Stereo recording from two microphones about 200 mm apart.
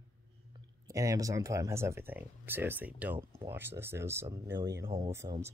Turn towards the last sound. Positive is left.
turn(degrees=-15)  # may be behind; listen again after turning